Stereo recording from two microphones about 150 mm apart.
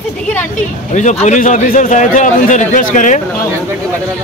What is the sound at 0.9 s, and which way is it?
A man's voice, 55° left (ahead or behind).